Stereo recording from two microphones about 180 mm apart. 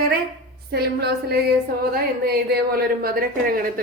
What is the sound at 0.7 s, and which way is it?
Speech, 60° right (ahead or behind).